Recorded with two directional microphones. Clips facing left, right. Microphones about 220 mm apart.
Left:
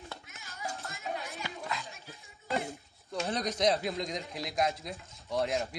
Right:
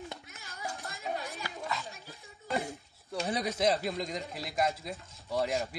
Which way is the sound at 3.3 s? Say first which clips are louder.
Even; 10° right (ahead or behind).